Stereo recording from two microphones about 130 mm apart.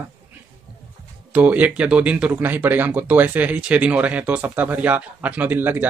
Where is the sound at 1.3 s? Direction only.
10° right (ahead or behind).